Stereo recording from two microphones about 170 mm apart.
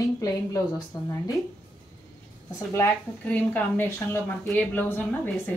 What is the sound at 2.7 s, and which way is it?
A woman's voice, 10° left (ahead or behind).